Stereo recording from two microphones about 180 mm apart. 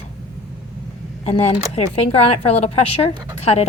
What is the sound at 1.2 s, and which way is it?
Speech, 35° left (ahead or behind).